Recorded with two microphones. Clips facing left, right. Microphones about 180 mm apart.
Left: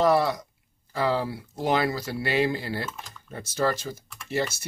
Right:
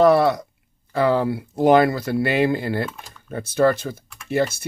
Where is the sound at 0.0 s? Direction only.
65° right (ahead or behind).